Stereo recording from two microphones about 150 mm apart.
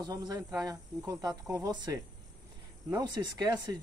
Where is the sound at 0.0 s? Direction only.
25° right (ahead or behind).